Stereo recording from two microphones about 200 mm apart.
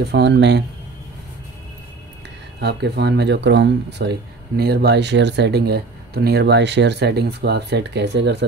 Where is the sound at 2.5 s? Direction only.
55° right (ahead or behind).